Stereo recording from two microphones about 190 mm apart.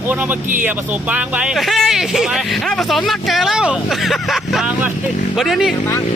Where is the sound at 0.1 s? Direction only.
10° right (ahead or behind).